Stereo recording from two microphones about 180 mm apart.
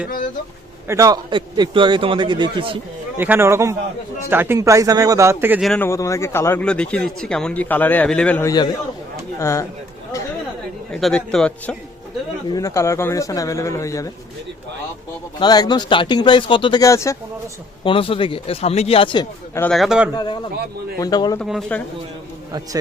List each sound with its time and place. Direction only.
0.9 s a man's voice: 20° right (ahead or behind)
3.2 s speech: 10° right (ahead or behind)
5.6 s speech: 10° left (ahead or behind)
10.9 s a man's voice: 5° left (ahead or behind)
12.5 s speech: 20° left (ahead or behind)
15.4 s speech: 20° left (ahead or behind)
17.8 s speech: 30° left (ahead or behind)
19.7 s a man's voice: centre (ahead or behind)
20.1 s speech: 25° left (ahead or behind)
21.3 s speech: 5° left (ahead or behind)